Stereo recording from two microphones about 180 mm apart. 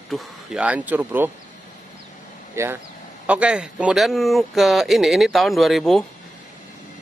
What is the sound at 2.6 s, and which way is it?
A man's voice, 15° right (ahead or behind).